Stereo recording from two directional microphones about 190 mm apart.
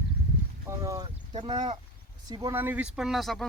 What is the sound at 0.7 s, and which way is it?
Speech, 15° right (ahead or behind).